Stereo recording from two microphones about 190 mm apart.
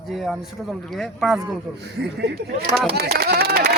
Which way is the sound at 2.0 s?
60° right (ahead or behind).